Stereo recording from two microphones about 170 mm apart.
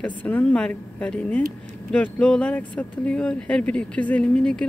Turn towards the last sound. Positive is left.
turn(degrees=5)  # may be behind; listen again after turning